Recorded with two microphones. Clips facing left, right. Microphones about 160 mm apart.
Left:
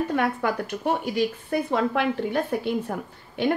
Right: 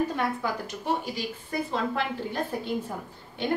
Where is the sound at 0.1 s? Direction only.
65° left (ahead or behind).